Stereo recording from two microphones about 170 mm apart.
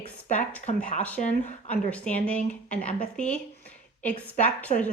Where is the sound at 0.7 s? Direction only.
45° left (ahead or behind).